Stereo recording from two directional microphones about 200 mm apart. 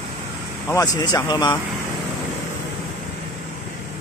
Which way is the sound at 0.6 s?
15° left (ahead or behind).